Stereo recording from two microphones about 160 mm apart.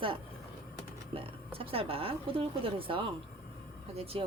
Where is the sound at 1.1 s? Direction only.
35° right (ahead or behind).